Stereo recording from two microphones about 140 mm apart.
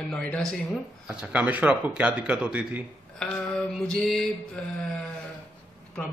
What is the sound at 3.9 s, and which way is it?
Speech, 5° left (ahead or behind).